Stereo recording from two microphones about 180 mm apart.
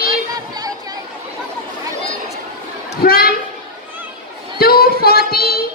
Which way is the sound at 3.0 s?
55° left (ahead or behind).